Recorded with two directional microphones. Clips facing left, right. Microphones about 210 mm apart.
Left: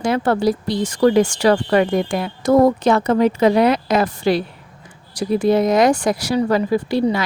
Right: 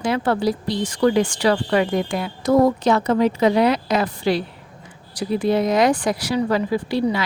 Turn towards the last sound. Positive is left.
turn(degrees=45)  # may be behind; listen again after turning